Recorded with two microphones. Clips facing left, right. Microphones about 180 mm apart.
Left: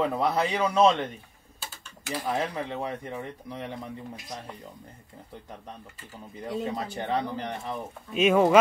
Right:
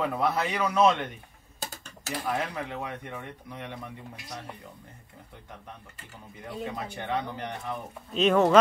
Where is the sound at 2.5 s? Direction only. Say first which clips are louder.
Left 3 dB; 25° left (ahead or behind).